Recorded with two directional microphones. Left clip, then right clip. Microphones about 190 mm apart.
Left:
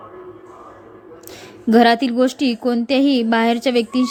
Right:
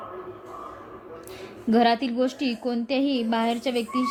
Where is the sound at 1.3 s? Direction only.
35° left (ahead or behind).